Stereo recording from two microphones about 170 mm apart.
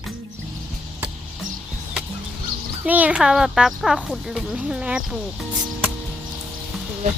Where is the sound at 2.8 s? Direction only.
10° right (ahead or behind).